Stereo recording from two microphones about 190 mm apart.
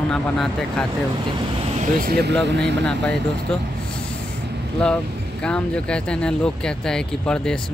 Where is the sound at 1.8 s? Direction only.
50° right (ahead or behind).